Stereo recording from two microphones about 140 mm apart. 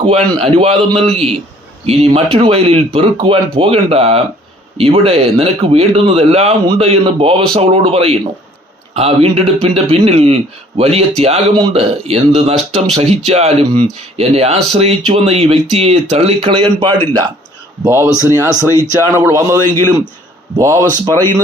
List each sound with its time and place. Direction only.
0.0 s speech: 40° right (ahead or behind)
17.8 s speech: 15° right (ahead or behind)
20.6 s speech: 20° right (ahead or behind)